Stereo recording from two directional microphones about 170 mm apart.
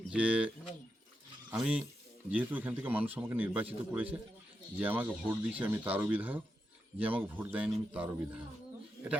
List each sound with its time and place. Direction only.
0.1 s a man's voice: 5° right (ahead or behind)